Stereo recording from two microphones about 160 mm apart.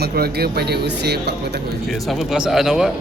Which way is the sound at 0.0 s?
75° right (ahead or behind).